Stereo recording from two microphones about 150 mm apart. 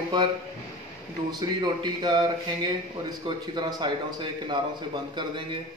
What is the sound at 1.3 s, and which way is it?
A man's voice, 30° right (ahead or behind).